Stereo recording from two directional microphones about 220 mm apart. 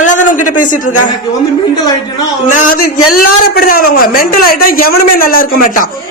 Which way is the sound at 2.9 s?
90° left.